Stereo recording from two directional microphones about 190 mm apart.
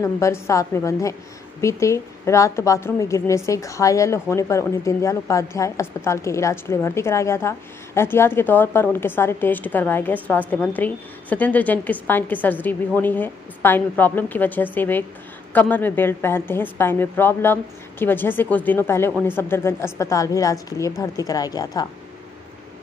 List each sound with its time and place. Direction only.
0.0 s a woman's voice: 15° left (ahead or behind)